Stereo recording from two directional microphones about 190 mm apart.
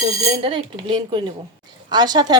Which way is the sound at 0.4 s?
25° right (ahead or behind).